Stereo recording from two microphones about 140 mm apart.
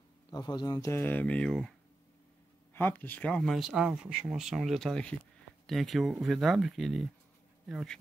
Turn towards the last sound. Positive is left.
turn(degrees=0)  # may be behind; listen again after turning